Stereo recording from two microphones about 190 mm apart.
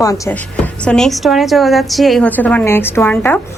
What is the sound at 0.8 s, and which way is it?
A woman's voice, 5° left (ahead or behind).